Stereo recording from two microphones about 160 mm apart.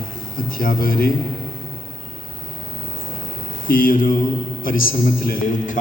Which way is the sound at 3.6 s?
60° left (ahead or behind).